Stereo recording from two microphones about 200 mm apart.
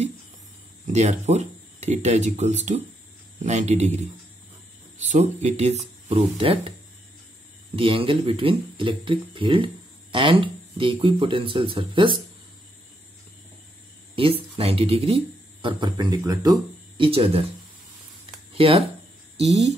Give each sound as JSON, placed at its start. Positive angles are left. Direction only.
{"t": 0.8, "sound": "speech", "side_deg": -35}
{"t": 7.7, "sound": "speech", "side_deg": -30}
{"t": 14.1, "sound": "speech", "side_deg": -30}
{"t": 18.5, "sound": "speech", "side_deg": -30}